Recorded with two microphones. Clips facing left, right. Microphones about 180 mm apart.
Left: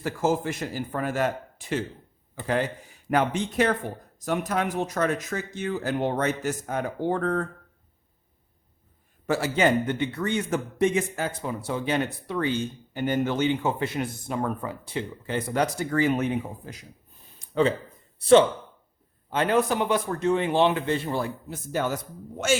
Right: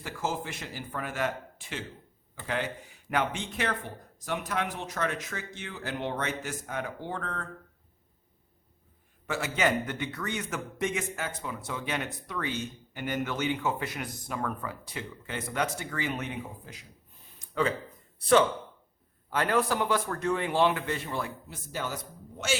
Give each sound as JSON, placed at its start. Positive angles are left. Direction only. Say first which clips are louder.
{"t": 0.0, "sound": "speech", "louder": "left 8 dB", "side_deg": 45}
{"t": 3.1, "sound": "speech", "louder": "left 6 dB", "side_deg": 40}
{"t": 9.2, "sound": "a man's voice", "louder": "left 6 dB", "side_deg": 35}
{"t": 17.4, "sound": "a sound", "louder": "left 6 dB", "side_deg": 25}
{"t": 19.3, "sound": "a man's voice", "louder": "left 4 dB", "side_deg": 20}
{"t": 21.7, "sound": "speech", "louder": "left 8 dB", "side_deg": 55}